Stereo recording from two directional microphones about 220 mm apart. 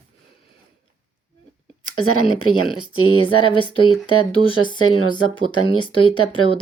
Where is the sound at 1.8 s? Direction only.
75° left (ahead or behind).